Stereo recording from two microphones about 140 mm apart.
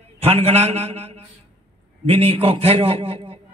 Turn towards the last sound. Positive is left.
turn(degrees=-45)  # may be behind; listen again after turning